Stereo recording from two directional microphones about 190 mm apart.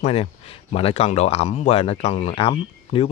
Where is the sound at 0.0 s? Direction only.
30° left (ahead or behind).